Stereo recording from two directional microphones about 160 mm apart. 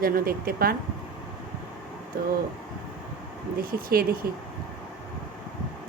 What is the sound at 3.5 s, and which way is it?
Speech, 70° right (ahead or behind).